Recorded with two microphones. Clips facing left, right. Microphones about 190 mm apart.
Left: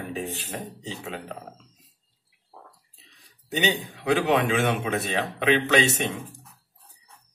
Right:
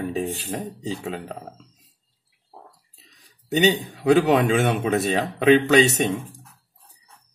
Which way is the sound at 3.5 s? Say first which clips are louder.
Right 6 dB; 40° right (ahead or behind).